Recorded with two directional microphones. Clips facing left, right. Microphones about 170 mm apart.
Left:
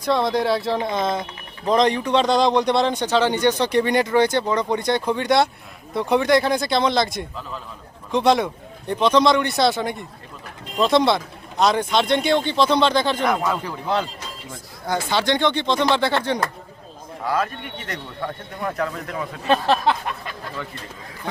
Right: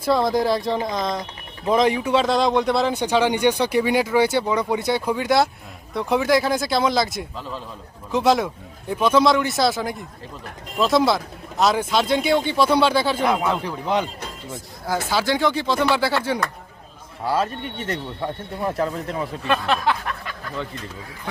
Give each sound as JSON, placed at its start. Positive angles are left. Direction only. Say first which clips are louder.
{"t": 0.0, "sound": "speech", "louder": "right 1 dB", "side_deg": 0}
{"t": 17.2, "sound": "speech", "louder": "right 1 dB", "side_deg": -30}
{"t": 19.5, "sound": "speech", "louder": "left 3 dB", "side_deg": 30}